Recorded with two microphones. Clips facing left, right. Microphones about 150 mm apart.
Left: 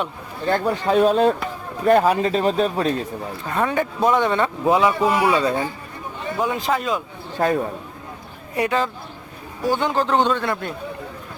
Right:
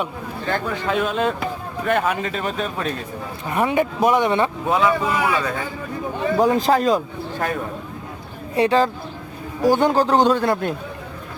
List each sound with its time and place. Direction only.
0.5 s speech: 35° left (ahead or behind)
3.5 s speech: 15° right (ahead or behind)
4.7 s speech: 20° left (ahead or behind)
6.4 s speech: 35° right (ahead or behind)
7.3 s speech: 30° left (ahead or behind)
8.5 s speech: 30° right (ahead or behind)